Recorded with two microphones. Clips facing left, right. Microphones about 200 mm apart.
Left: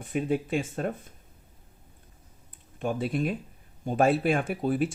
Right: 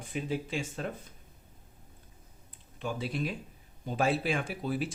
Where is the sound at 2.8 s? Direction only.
50° left (ahead or behind).